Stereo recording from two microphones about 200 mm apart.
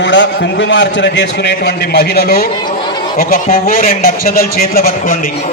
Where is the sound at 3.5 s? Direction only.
45° left (ahead or behind).